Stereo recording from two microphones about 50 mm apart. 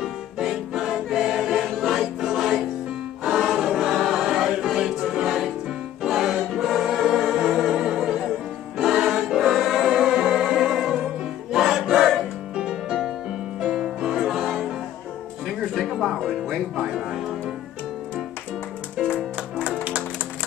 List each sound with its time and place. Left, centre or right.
0.4 s choir: centre
4.7 s choir: centre
6.0 s music: centre
6.6 s choir: centre
7.5 s music: centre
8.7 s choir: centre
9.8 s music: centre
19.5 s music: right